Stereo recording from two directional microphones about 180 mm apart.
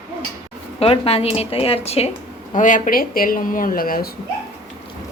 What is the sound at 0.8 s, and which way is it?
Speech, 35° left (ahead or behind).